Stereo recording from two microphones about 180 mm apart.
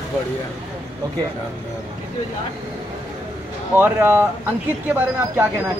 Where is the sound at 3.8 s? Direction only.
10° right (ahead or behind).